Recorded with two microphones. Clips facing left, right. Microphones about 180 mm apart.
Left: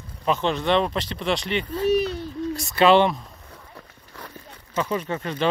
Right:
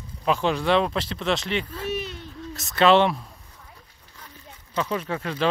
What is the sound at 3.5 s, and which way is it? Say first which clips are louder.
Horse: left 6 dB; 75° left (ahead or behind).